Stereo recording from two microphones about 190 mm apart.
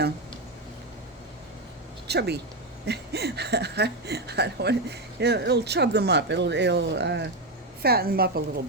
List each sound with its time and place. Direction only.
2.0 s a woman's voice: 60° right (ahead or behind)
7.8 s speech: 55° right (ahead or behind)